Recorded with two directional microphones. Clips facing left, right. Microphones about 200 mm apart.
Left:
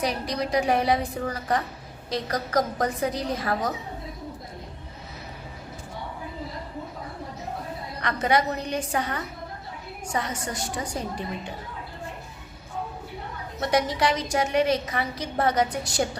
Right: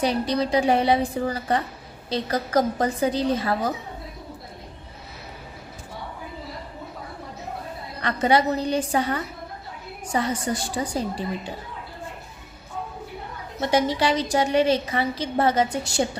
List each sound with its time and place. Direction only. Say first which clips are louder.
0.0 s a woman's voice: right 5 dB; 30° right (ahead or behind)
8.0 s a woman's voice: right 3 dB; 30° right (ahead or behind)
13.6 s a woman's voice: right 2 dB; 25° right (ahead or behind)